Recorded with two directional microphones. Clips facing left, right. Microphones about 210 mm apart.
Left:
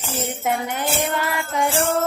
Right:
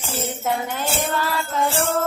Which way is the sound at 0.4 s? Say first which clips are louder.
Left 1 dB; 15° left (ahead or behind).